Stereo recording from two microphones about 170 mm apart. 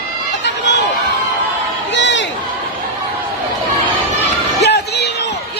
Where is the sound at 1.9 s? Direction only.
90° left.